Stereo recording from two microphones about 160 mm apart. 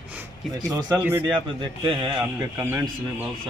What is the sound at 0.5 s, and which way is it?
Speech, 25° right (ahead or behind).